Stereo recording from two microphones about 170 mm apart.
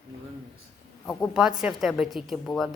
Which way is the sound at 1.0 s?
5° left (ahead or behind).